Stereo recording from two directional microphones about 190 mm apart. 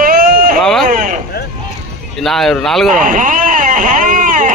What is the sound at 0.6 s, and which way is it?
Vehicle, 5° left (ahead or behind).